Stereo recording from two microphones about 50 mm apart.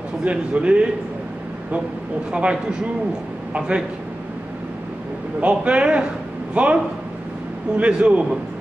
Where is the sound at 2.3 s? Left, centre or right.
Right.